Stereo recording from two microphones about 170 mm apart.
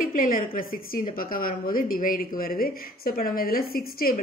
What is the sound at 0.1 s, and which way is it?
A woman's voice, 55° left (ahead or behind).